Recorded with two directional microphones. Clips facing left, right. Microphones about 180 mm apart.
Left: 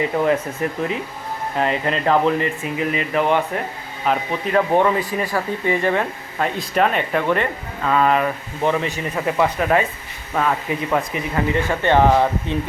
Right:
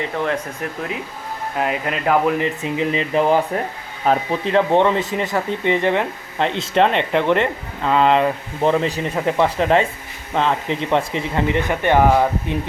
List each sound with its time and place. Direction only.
0.0 s speech: 5° left (ahead or behind)
2.4 s speech: 20° right (ahead or behind)